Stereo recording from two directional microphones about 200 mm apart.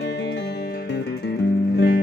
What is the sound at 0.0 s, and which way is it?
Music, 55° left (ahead or behind).